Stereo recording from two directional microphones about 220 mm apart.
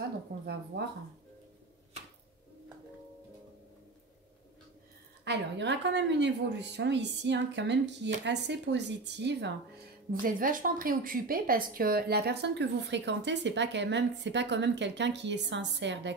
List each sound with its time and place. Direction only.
0.3 s a sound: 40° right (ahead or behind)
0.7 s a woman's voice: 50° right (ahead or behind)
5.2 s a woman's voice: 50° right (ahead or behind)
10.2 s a woman's voice: 40° right (ahead or behind)